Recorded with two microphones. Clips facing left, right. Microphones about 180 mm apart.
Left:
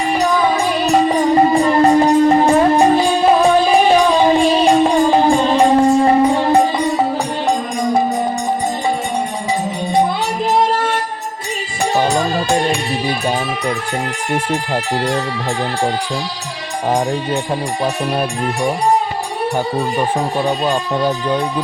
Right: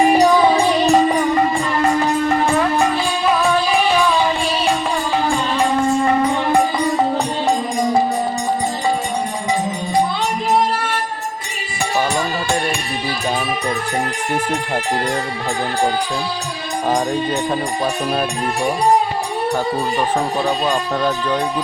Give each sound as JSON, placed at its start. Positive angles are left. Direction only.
{"t": 1.3, "sound": "music", "side_deg": 35}
{"t": 11.9, "sound": "music", "side_deg": 35}
{"t": 20.9, "sound": "speech", "side_deg": 15}